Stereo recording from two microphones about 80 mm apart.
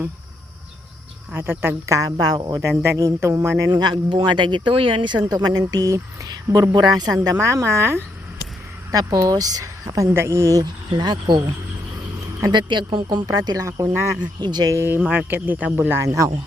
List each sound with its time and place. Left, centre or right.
1.3 s speech: right
2.0 s speech: right
2.6 s speech: right
3.7 s speech: right
6.7 s speech: right
7.3 s speech: right
8.9 s speech: right
10.2 s speech: right
10.9 s speech: right
13.2 s speech: right
13.7 s speech: right
14.4 s speech: right
14.7 s speech: right